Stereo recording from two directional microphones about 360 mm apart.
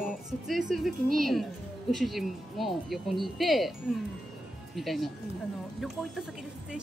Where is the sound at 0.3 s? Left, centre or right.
Centre.